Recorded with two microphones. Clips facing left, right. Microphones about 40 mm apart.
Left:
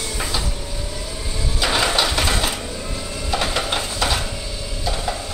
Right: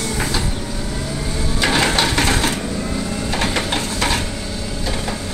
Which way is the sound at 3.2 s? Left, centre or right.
Right.